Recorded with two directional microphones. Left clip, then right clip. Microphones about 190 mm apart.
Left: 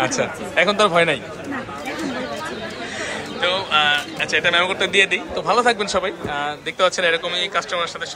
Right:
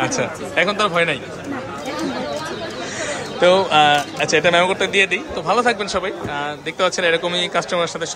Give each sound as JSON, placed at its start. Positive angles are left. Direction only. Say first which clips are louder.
{"t": 0.0, "sound": "speech", "louder": "even", "side_deg": -15}
{"t": 3.0, "sound": "speech", "louder": "right 5 dB", "side_deg": -35}